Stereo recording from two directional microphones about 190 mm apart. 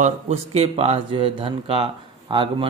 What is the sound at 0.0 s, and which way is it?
Speech, 35° right (ahead or behind).